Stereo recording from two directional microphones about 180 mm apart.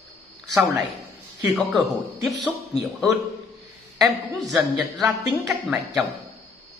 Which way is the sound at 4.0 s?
Centre (ahead or behind).